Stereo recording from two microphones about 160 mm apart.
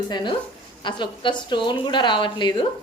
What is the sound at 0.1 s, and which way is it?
A woman's voice, 30° left (ahead or behind).